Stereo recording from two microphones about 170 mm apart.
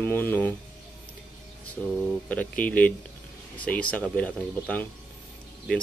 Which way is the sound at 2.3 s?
10° left (ahead or behind).